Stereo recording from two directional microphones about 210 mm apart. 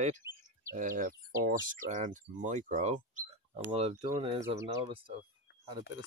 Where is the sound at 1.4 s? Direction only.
35° right (ahead or behind).